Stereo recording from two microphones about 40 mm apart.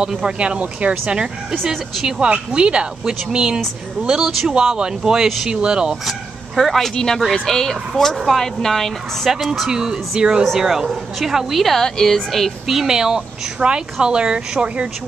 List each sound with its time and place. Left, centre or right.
0.0 s speech: centre
1.5 s speech: centre
2.0 s speech: right
6.0 s speech: centre
9.3 s speech: centre
10.6 s speech: centre
11.6 s speech: centre
12.6 s speech: centre